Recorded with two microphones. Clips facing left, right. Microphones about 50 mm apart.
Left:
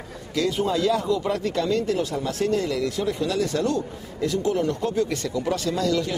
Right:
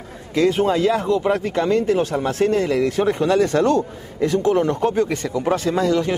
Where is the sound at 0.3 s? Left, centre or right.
Right.